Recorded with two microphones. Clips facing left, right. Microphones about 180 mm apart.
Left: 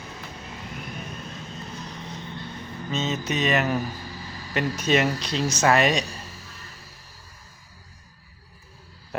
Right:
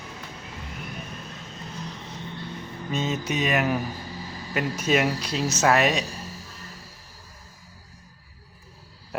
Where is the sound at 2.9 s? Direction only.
10° right (ahead or behind).